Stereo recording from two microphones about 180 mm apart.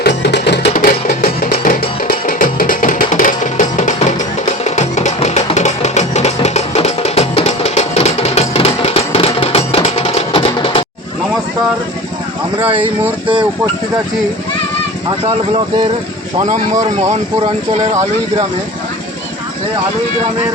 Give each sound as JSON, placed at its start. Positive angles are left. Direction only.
{"t": 0.0, "sound": "music", "side_deg": 70}
{"t": 0.7, "sound": "music", "side_deg": 50}
{"t": 12.5, "sound": "speech", "side_deg": -10}
{"t": 15.2, "sound": "speech", "side_deg": -30}